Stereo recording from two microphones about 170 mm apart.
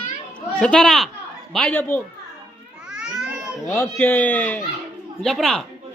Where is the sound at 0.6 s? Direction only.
5° left (ahead or behind).